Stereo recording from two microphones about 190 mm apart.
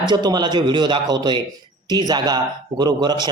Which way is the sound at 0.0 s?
25° right (ahead or behind).